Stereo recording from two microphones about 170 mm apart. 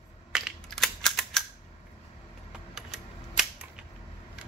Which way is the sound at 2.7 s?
5° right (ahead or behind).